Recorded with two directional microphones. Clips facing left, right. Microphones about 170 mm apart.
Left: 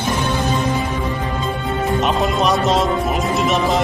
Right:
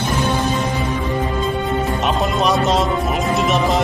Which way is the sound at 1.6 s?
Centre (ahead or behind).